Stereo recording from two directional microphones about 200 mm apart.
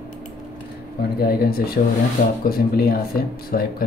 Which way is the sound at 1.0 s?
50° left (ahead or behind).